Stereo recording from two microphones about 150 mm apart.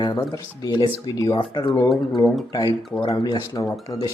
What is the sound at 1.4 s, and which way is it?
Speech, 35° left (ahead or behind).